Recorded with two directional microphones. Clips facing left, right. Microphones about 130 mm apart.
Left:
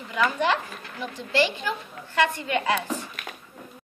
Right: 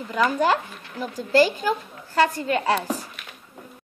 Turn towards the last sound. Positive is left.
turn(degrees=-35)  # may be behind; listen again after turning